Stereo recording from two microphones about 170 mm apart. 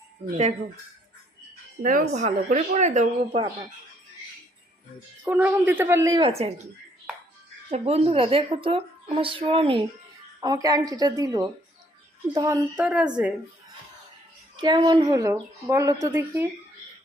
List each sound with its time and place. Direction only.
1.8 s speech: 55° right (ahead or behind)
5.2 s a woman's voice: 10° right (ahead or behind); by 6.5 s 35° right (ahead or behind)
7.7 s a woman's voice: 35° right (ahead or behind)
10.4 s speech: 20° right (ahead or behind)
12.7 s a woman's voice: 5° right (ahead or behind)
14.5 s speech: 25° right (ahead or behind)